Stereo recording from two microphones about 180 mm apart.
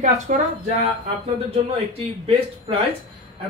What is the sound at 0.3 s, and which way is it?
Speech, 45° right (ahead or behind).